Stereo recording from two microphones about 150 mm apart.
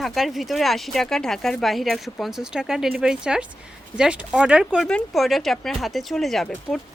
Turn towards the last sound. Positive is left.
turn(degrees=5)  # may be behind; listen again after turning